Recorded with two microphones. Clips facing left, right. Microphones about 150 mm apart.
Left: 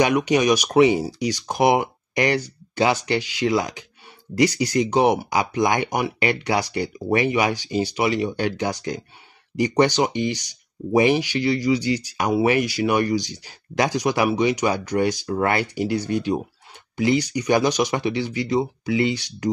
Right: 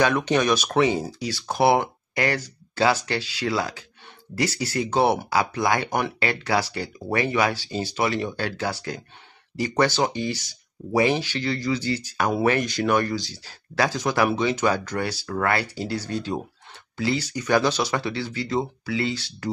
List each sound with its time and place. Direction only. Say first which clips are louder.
0.0 s speech: left 3 dB; 15° left (ahead or behind)